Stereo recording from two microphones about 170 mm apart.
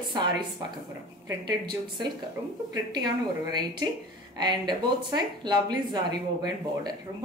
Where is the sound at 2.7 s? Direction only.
25° right (ahead or behind).